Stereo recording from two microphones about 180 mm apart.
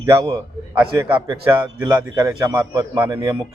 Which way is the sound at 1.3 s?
25° right (ahead or behind).